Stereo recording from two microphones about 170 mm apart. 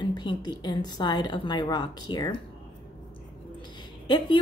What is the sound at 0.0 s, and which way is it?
A woman's voice, 25° left (ahead or behind).